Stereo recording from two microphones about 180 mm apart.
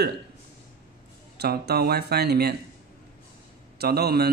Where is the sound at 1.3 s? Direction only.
65° right (ahead or behind).